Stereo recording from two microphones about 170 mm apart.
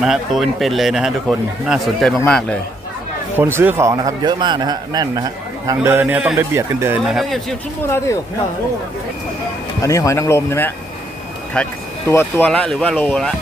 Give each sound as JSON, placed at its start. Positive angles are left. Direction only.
{"t": 0.0, "sound": "a man's voice", "side_deg": 0}
{"t": 3.3, "sound": "a man's voice", "side_deg": -15}
{"t": 7.1, "sound": "a man's voice", "side_deg": 0}
{"t": 7.9, "sound": "speech", "side_deg": 15}
{"t": 9.8, "sound": "a man's voice", "side_deg": 20}